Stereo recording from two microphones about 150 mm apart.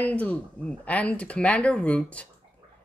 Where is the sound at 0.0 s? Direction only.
10° left (ahead or behind).